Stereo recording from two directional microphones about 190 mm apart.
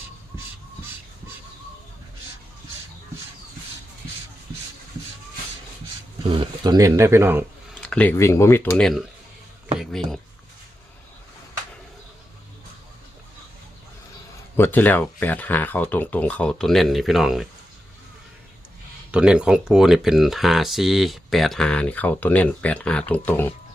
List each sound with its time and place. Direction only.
6.3 s speech: 25° right (ahead or behind)
7.8 s speech: 5° left (ahead or behind)
8.7 s speech: centre (ahead or behind)
9.7 s a sound: centre (ahead or behind)
14.5 s speech: 10° left (ahead or behind)
19.1 s speech: 5° right (ahead or behind); by 23.6 s 10° left (ahead or behind)